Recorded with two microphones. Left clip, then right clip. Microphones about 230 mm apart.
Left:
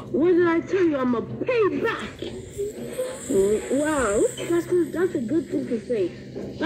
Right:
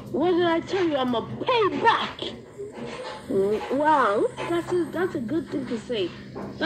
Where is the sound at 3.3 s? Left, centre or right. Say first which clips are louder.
Left 2 dB; centre.